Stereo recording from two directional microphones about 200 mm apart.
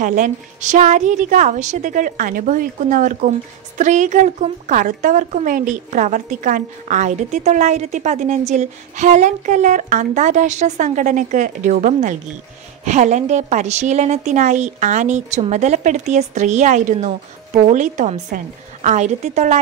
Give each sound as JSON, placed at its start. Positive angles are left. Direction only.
{"t": 0.0, "sound": "a woman's voice", "side_deg": -40}